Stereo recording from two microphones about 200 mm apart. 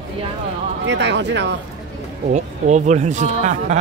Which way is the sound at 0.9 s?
60° right (ahead or behind).